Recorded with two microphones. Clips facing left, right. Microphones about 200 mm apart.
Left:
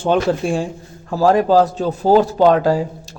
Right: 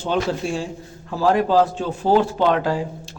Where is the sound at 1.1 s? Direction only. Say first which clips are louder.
Left 4 dB; 45° left (ahead or behind).